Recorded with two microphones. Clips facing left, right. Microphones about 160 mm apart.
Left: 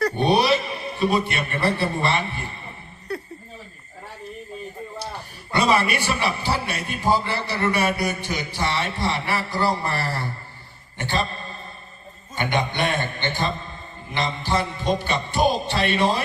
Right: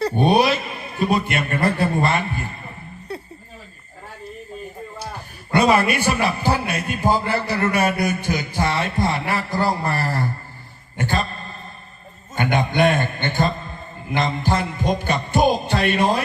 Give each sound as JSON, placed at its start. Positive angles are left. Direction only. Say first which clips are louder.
{"t": 0.2, "sound": "a man's voice", "louder": "right 3 dB", "side_deg": -45}
{"t": 5.5, "sound": "a man's voice", "louder": "right 4 dB", "side_deg": -45}
{"t": 10.9, "sound": "a sound", "louder": "right 2 dB", "side_deg": -45}
{"t": 12.3, "sound": "a man's voice", "louder": "right 3 dB", "side_deg": -50}